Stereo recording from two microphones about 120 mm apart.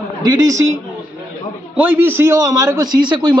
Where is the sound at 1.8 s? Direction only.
15° right (ahead or behind); by 3.4 s 40° right (ahead or behind).